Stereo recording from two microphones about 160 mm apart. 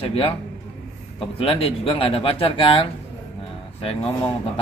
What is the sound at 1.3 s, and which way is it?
A man's voice, 35° left (ahead or behind).